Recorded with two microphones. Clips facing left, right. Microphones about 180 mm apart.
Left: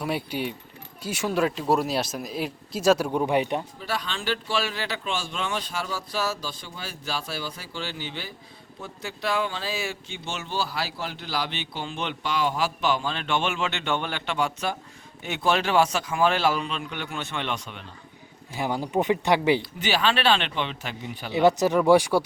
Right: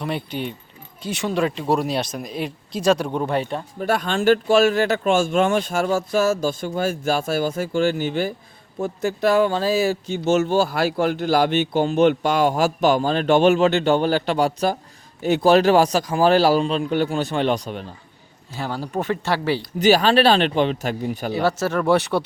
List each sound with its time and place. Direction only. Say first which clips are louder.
0.0 s speech: right 2 dB; 5° left (ahead or behind)
3.8 s speech: right 10 dB; 50° right (ahead or behind)
18.5 s speech: left 1 dB; 15° left (ahead or behind)
19.8 s speech: right 9 dB; 40° right (ahead or behind)
21.3 s speech: left 3 dB; 15° left (ahead or behind)